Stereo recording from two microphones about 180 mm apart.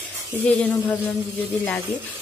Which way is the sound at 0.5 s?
5° left (ahead or behind).